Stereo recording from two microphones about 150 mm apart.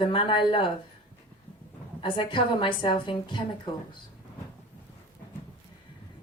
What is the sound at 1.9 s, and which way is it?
Speech, 35° left (ahead or behind).